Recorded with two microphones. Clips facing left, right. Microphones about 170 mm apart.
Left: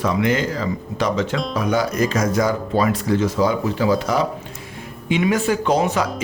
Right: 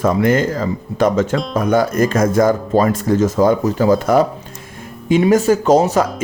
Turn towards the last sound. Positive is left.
turn(degrees=-40)  # may be behind; listen again after turning